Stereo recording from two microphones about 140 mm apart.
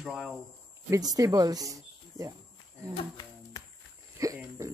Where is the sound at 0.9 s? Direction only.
25° right (ahead or behind).